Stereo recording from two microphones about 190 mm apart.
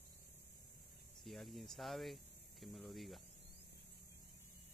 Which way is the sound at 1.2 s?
Centre (ahead or behind).